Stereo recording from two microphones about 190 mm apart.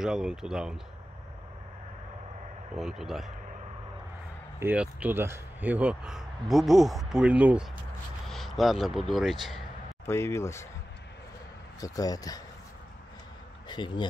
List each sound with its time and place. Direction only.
0.0 s speech: 5° right (ahead or behind)
2.7 s speech: centre (ahead or behind)
4.6 s speech: 10° right (ahead or behind)
8.3 s a sound: centre (ahead or behind)
9.1 s speech: centre (ahead or behind)
10.0 s speech: 15° left (ahead or behind)
11.8 s speech: 20° left (ahead or behind)
13.7 s speech: 25° left (ahead or behind)